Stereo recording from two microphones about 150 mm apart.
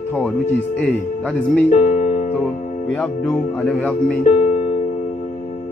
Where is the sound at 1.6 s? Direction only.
50° left (ahead or behind).